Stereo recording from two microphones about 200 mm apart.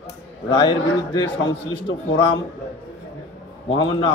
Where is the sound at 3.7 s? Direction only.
25° left (ahead or behind).